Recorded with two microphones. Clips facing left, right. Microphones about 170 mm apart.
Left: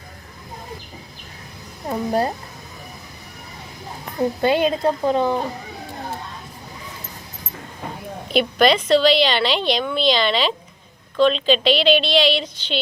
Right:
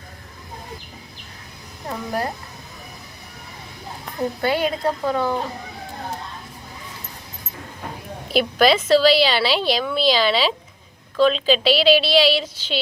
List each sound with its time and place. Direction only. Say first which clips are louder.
1.9 s a woman's voice: left 5 dB; 25° left (ahead or behind)
4.4 s a woman's voice: left 3 dB; 20° left (ahead or behind)
8.3 s a woman's voice: even; 5° right (ahead or behind)